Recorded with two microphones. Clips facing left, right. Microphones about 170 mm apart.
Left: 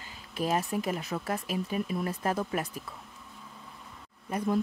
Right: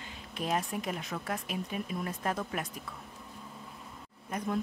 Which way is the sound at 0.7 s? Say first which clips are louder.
Left 4 dB; 5° left (ahead or behind).